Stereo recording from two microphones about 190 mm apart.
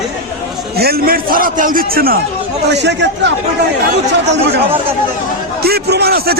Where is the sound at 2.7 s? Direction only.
65° right (ahead or behind).